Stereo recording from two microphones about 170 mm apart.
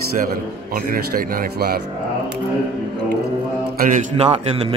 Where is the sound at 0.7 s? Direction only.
55° right (ahead or behind).